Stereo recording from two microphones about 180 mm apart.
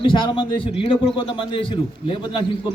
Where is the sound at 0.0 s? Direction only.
30° left (ahead or behind).